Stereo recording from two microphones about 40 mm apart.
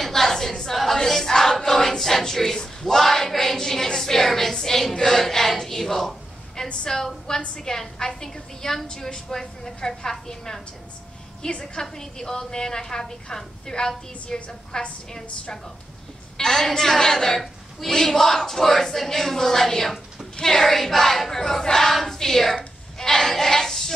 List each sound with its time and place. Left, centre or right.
0.0 s choir: centre
7.2 s speech: centre
11.6 s a woman's voice: centre
16.3 s speech: centre
17.4 s speech: centre